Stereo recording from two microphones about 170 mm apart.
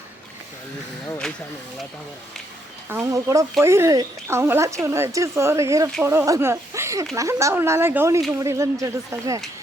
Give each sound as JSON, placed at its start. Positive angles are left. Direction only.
{"t": 2.9, "sound": "speech", "side_deg": -15}